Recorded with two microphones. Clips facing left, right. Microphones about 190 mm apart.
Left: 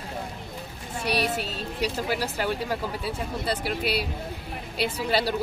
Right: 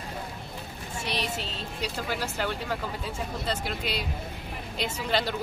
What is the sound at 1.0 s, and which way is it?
Speech, 10° left (ahead or behind).